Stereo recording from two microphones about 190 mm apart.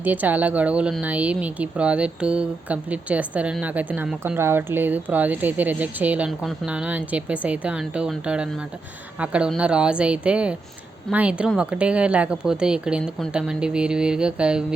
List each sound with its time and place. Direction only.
0.0 s a woman's voice: 10° right (ahead or behind)